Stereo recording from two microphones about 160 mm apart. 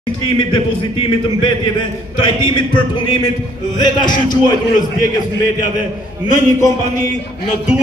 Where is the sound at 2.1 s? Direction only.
30° left (ahead or behind).